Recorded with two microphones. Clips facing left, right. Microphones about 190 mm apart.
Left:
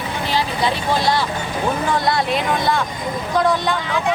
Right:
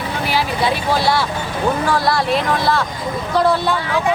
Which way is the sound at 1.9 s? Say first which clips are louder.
Right 1 dB; 20° left (ahead or behind).